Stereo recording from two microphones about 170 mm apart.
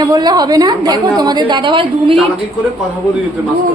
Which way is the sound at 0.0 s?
25° right (ahead or behind).